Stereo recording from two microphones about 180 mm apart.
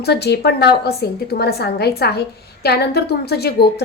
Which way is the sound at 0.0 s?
65° left (ahead or behind).